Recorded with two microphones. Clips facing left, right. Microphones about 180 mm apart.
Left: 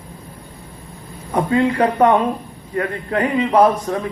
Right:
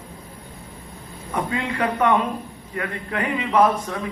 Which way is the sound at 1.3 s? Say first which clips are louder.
Left 9 dB; 35° left (ahead or behind).